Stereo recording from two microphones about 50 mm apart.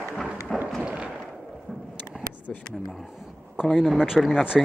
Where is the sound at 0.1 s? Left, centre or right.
Centre.